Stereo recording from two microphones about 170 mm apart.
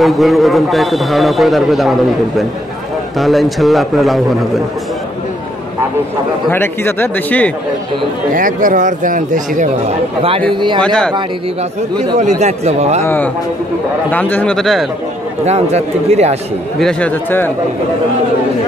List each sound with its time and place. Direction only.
0.0 s a man's voice: centre (ahead or behind)
6.5 s a man's voice: 15° left (ahead or behind)
8.4 s speech: 50° right (ahead or behind)
10.5 s speech: 30° right (ahead or behind)
10.8 s a man's voice: 5° left (ahead or behind)
12.2 s speech: 40° right (ahead or behind)
13.0 s a man's voice: 10° left (ahead or behind)
15.4 s speech: 40° right (ahead or behind)
16.8 s a man's voice: 10° left (ahead or behind)